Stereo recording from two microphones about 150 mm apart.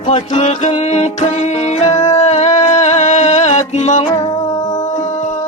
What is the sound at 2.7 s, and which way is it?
Music, 50° left (ahead or behind).